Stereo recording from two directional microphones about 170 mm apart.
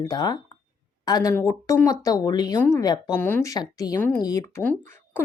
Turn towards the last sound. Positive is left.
turn(degrees=10)  # may be behind; listen again after turning